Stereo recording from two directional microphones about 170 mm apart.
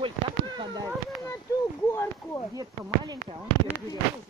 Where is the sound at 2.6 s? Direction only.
20° right (ahead or behind).